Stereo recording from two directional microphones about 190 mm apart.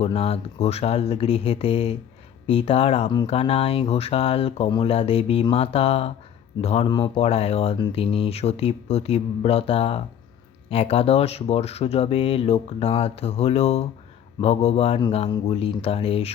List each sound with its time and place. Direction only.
0.0 s speech: 30° left (ahead or behind)
6.8 s speech: 25° left (ahead or behind)